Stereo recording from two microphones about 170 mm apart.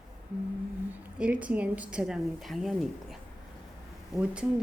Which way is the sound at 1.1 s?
5° right (ahead or behind).